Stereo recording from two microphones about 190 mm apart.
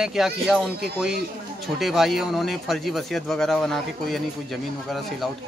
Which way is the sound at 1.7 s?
Centre (ahead or behind).